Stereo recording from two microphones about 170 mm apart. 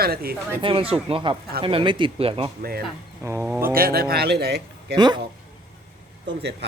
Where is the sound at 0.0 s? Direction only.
65° right (ahead or behind).